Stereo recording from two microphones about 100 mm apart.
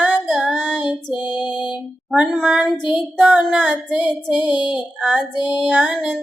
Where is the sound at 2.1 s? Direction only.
10° right (ahead or behind).